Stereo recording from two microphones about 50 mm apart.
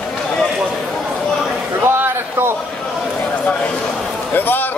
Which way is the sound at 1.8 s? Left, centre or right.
Right.